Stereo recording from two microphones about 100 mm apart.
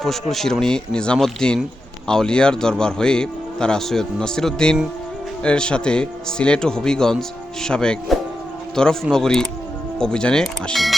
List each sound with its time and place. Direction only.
0.0 s speech: centre (ahead or behind)